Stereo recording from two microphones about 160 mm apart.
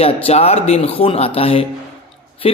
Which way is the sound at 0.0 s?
40° left (ahead or behind).